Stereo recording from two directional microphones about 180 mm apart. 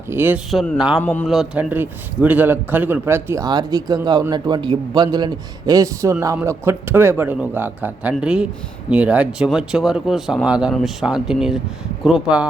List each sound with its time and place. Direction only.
0.1 s speech: 10° right (ahead or behind)
1.0 s a man's voice: 10° left (ahead or behind)
1.3 s a man's voice: 5° right (ahead or behind)